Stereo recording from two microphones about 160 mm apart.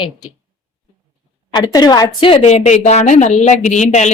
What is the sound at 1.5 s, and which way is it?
A woman's voice, 25° left (ahead or behind).